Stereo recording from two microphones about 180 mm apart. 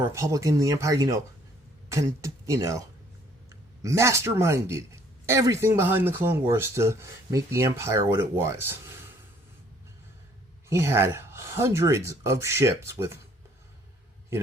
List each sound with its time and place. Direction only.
0.0 s a man's voice: 15° right (ahead or behind)
10.7 s a man's voice: 15° right (ahead or behind)